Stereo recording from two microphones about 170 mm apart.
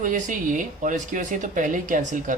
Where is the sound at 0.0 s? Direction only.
50° right (ahead or behind).